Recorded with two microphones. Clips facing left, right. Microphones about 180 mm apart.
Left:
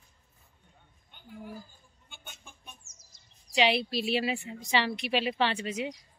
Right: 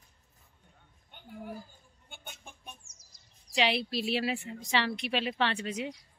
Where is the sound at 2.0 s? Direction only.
55° right (ahead or behind).